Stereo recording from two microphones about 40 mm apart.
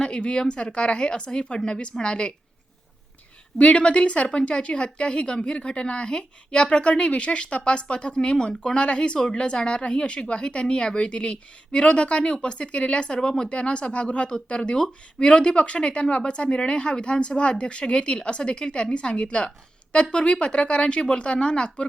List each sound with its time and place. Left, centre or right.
0.2 s a woman's voice: left
3.6 s a woman's voice: left